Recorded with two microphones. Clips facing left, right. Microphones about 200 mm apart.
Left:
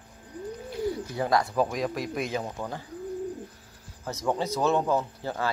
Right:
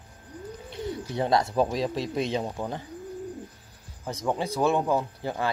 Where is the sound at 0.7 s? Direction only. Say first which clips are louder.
Left 1 dB; 25° right (ahead or behind).